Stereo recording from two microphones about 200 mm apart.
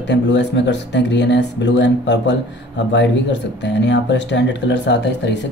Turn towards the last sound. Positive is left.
turn(degrees=60)  # may be behind; listen again after turning